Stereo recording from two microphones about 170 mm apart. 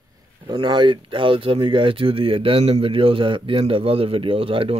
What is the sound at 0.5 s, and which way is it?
Speech, 30° right (ahead or behind).